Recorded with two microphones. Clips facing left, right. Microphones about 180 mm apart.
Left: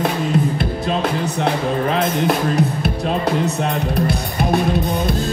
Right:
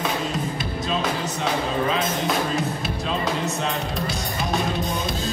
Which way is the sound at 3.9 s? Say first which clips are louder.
Left 7 dB; 60° left (ahead or behind).